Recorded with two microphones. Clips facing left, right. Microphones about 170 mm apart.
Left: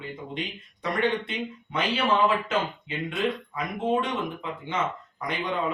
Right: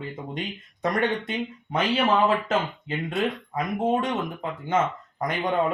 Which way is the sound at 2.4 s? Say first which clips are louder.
Right 2 dB; 40° right (ahead or behind).